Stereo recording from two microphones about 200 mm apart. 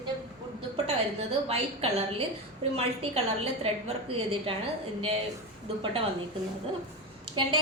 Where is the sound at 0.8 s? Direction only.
30° right (ahead or behind).